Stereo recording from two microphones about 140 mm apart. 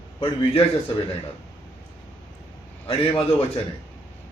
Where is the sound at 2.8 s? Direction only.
40° left (ahead or behind).